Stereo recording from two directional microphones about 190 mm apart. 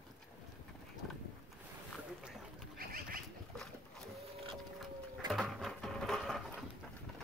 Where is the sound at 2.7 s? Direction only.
50° right (ahead or behind).